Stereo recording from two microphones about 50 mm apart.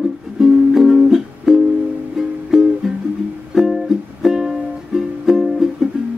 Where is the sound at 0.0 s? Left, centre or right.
Centre.